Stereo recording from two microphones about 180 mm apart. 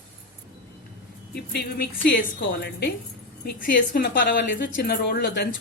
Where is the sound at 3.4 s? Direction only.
55° left (ahead or behind).